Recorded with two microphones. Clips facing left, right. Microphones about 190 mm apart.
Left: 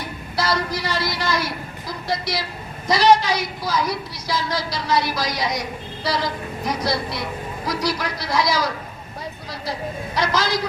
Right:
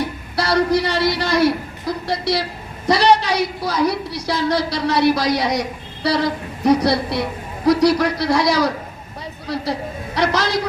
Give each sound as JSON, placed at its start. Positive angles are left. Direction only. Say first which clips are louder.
{"t": 0.3, "sound": "a woman's voice", "louder": "right 7 dB", "side_deg": -65}
{"t": 10.2, "sound": "a woman's voice", "louder": "right 3 dB", "side_deg": -65}